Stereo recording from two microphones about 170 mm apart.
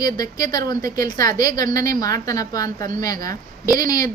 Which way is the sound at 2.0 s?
20° left (ahead or behind).